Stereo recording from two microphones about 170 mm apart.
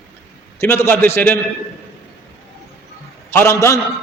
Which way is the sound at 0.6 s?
15° left (ahead or behind).